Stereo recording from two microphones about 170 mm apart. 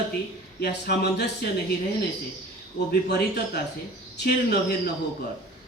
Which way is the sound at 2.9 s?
70° left (ahead or behind).